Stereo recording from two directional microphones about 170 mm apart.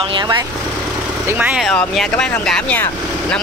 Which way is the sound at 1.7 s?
5° left (ahead or behind).